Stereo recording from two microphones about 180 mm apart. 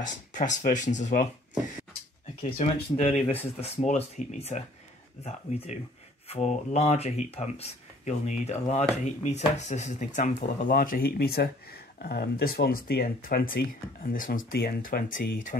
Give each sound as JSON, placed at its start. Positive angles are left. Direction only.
{"t": 0.0, "sound": "speech", "side_deg": 45}